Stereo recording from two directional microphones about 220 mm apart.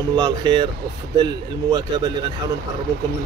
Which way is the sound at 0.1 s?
20° right (ahead or behind).